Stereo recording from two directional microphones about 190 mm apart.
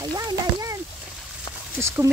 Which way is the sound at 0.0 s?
20° right (ahead or behind).